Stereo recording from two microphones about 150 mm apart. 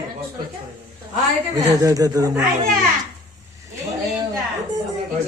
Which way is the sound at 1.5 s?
25° right (ahead or behind).